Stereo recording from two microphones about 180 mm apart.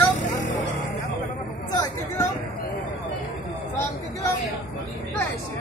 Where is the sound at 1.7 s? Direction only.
20° left (ahead or behind).